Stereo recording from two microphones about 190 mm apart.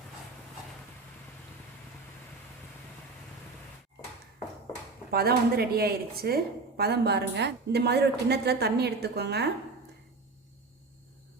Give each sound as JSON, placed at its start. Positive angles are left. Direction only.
{"t": 5.1, "sound": "a woman's voice", "side_deg": -55}